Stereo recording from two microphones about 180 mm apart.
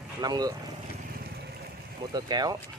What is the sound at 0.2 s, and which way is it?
Speech, 20° right (ahead or behind).